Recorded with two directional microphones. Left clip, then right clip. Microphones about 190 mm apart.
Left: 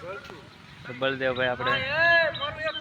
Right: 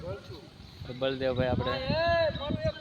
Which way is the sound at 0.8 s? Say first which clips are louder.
Left 3 dB; centre (ahead or behind).